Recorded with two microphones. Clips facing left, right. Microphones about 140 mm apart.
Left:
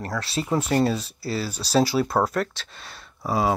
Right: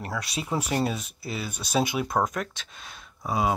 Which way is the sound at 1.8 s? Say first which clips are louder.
Left 5 dB; 15° right (ahead or behind).